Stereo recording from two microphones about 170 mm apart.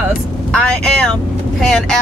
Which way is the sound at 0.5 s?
5° left (ahead or behind).